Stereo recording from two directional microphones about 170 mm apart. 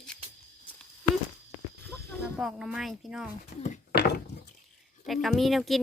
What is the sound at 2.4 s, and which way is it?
Speech, 5° right (ahead or behind).